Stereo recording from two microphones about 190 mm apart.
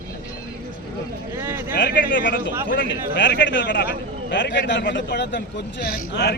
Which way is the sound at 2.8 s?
70° left (ahead or behind).